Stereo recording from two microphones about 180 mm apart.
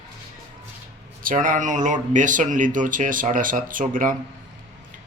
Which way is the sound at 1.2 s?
50° right (ahead or behind).